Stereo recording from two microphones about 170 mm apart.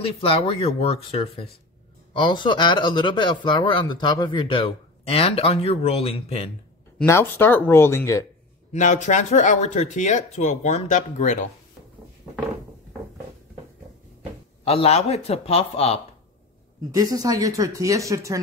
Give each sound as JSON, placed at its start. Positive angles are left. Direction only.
{"t": 0.0, "sound": "speech", "side_deg": 30}
{"t": 7.1, "sound": "speech", "side_deg": 15}
{"t": 8.7, "sound": "speech", "side_deg": 45}
{"t": 14.6, "sound": "speech", "side_deg": 35}
{"t": 16.9, "sound": "speech", "side_deg": -20}